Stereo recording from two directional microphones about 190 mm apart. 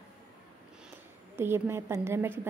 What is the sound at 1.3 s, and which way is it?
A woman's voice, 10° right (ahead or behind).